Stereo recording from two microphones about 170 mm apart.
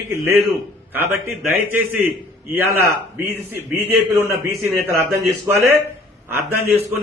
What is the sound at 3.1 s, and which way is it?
A man's voice, 15° right (ahead or behind).